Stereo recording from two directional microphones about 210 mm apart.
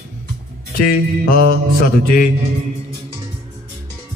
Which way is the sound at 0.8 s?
45° left (ahead or behind).